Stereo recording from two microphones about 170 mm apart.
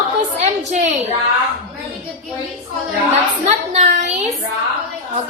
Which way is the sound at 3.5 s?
45° right (ahead or behind).